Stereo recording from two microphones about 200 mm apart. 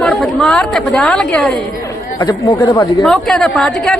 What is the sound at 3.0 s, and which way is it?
Speech, centre (ahead or behind).